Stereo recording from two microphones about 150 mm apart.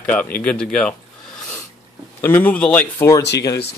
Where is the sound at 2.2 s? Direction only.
10° left (ahead or behind).